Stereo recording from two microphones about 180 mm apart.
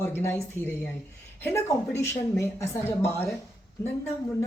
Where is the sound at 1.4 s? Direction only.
15° left (ahead or behind).